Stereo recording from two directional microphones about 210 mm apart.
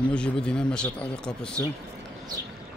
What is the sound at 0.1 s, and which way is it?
Speech, 5° left (ahead or behind).